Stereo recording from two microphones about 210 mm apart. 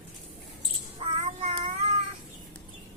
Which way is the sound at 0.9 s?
30° right (ahead or behind).